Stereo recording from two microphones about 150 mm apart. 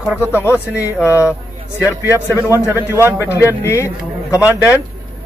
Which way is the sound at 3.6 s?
15° left (ahead or behind).